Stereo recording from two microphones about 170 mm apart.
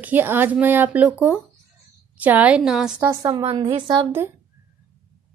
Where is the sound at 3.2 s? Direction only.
30° right (ahead or behind).